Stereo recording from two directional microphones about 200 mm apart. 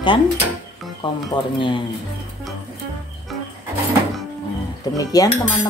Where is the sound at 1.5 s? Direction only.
25° left (ahead or behind).